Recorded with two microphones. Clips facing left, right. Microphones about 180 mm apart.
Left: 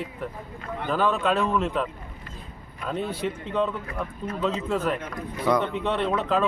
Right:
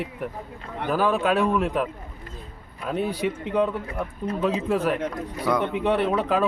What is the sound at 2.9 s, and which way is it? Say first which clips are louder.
Speech: right 3 dB; 10° right (ahead or behind).